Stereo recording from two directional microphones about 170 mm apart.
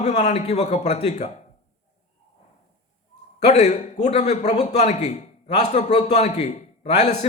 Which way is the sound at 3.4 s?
45° left (ahead or behind).